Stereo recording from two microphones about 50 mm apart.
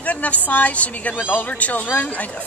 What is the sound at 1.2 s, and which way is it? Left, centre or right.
Speech, left.